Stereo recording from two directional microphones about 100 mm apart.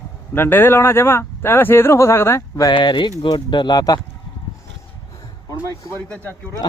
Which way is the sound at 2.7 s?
50° left (ahead or behind).